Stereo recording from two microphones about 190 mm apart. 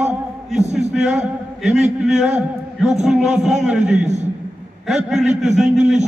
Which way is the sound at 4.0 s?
40° right (ahead or behind).